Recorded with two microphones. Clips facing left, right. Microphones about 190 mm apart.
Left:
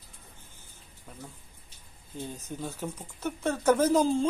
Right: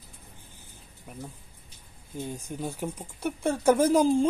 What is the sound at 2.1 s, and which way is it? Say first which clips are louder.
A woman's voice: right 3 dB; 10° right (ahead or behind).